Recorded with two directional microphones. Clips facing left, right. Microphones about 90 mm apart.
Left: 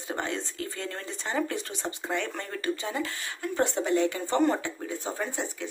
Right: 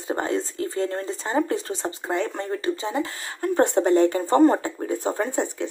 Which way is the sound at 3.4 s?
50° right (ahead or behind).